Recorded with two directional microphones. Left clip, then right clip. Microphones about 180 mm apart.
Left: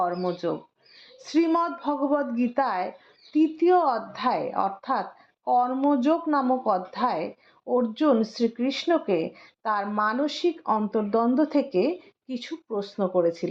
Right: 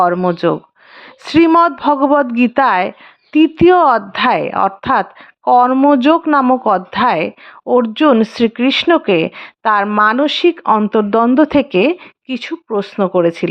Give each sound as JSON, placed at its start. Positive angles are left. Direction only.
{"t": 0.0, "sound": "a woman's voice", "side_deg": -40}